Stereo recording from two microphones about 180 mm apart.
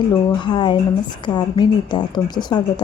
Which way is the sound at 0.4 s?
25° left (ahead or behind).